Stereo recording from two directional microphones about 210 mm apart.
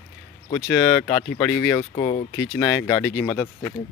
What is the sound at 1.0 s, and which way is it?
Speech, 15° left (ahead or behind).